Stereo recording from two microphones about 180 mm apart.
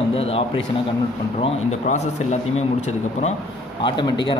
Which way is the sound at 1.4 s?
40° left (ahead or behind).